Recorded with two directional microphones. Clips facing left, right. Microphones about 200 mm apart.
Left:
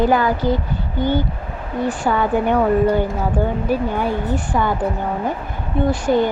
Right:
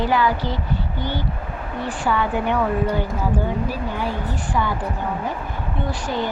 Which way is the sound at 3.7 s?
55° left (ahead or behind).